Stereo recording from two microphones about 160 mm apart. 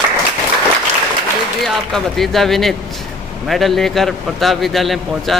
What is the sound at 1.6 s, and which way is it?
A man's voice, centre (ahead or behind).